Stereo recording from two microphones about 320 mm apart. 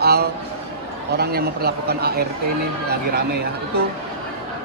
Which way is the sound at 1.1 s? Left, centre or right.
Right.